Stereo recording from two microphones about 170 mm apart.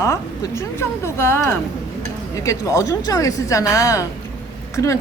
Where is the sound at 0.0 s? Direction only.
15° left (ahead or behind).